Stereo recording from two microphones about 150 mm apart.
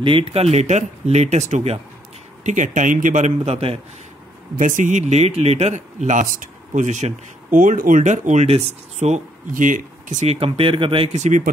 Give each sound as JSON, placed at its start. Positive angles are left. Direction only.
{"t": 0.0, "sound": "a man's voice", "side_deg": -40}
{"t": 4.6, "sound": "speech", "side_deg": -60}
{"t": 11.2, "sound": "a man's voice", "side_deg": -60}